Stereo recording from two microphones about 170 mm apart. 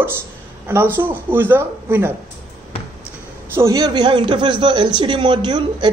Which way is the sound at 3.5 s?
20° right (ahead or behind).